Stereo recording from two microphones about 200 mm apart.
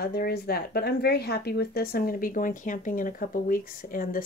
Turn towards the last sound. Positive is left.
turn(degrees=45)  # may be behind; listen again after turning